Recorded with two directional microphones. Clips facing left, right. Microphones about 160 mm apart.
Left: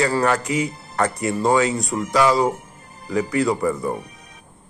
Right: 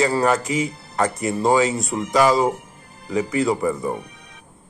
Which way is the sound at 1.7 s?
Centre (ahead or behind).